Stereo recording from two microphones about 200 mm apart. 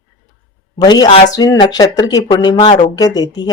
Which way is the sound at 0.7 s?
20° left (ahead or behind).